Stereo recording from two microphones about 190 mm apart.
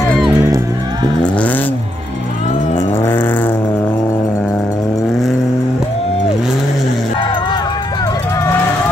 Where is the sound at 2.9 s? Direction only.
10° left (ahead or behind).